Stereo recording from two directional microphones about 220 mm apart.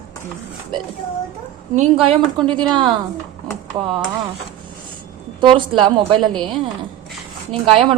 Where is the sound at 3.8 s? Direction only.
25° right (ahead or behind).